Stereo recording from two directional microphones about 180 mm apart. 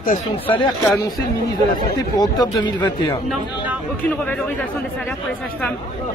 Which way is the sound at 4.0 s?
10° left (ahead or behind).